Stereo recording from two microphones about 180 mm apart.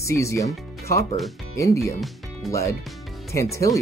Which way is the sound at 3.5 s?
20° left (ahead or behind).